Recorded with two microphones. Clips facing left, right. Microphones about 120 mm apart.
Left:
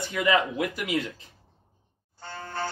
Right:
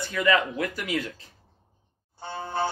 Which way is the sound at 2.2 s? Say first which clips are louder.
Right 5 dB; 15° right (ahead or behind).